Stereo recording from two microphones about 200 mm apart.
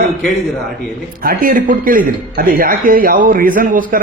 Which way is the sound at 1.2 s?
45° right (ahead or behind).